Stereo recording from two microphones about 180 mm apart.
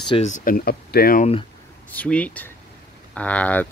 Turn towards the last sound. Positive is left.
turn(degrees=5)  # may be behind; listen again after turning